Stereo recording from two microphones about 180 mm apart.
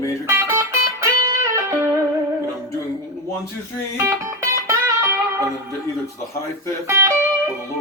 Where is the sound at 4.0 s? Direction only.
15° right (ahead or behind).